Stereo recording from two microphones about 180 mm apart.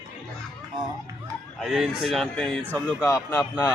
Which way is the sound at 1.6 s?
Centre (ahead or behind).